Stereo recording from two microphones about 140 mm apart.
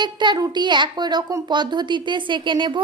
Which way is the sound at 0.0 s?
35° right (ahead or behind).